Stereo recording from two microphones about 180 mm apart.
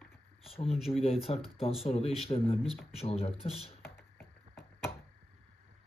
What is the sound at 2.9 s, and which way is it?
Speech, 35° left (ahead or behind).